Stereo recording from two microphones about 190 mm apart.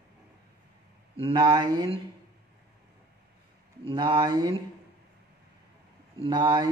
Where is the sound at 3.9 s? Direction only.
25° right (ahead or behind).